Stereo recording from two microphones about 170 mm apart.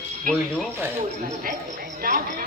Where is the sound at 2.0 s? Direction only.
60° right (ahead or behind).